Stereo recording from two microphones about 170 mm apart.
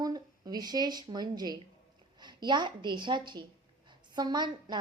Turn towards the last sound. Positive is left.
turn(degrees=-25)  # may be behind; listen again after turning